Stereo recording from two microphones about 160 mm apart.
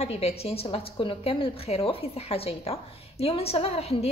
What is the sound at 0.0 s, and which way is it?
A woman's voice, 40° left (ahead or behind).